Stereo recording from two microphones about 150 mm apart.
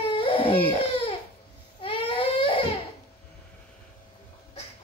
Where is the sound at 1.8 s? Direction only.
35° left (ahead or behind).